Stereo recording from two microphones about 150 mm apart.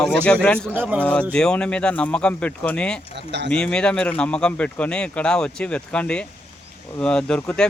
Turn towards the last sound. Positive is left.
turn(degrees=5)  # may be behind; listen again after turning